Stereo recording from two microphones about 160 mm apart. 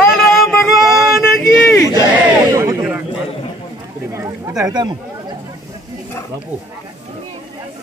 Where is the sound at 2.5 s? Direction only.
20° right (ahead or behind).